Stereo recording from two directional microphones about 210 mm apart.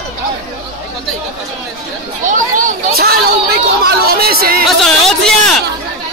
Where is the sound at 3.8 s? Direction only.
45° right (ahead or behind).